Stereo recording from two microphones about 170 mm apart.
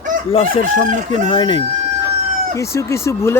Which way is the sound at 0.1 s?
50° right (ahead or behind).